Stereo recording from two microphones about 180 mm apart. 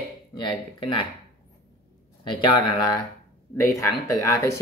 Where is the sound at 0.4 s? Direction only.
25° left (ahead or behind).